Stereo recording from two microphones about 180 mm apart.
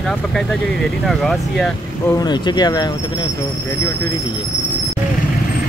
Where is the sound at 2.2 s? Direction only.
25° left (ahead or behind).